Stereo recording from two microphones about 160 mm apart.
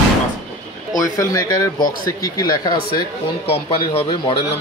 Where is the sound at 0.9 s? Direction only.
20° left (ahead or behind).